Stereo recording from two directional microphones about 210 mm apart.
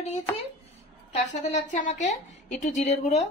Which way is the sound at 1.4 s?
35° left (ahead or behind).